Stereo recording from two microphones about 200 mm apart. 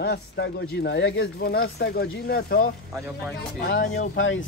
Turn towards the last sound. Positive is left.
turn(degrees=70)  # may be behind; listen again after turning